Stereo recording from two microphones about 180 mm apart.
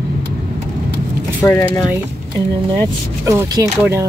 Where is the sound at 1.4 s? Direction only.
10° left (ahead or behind).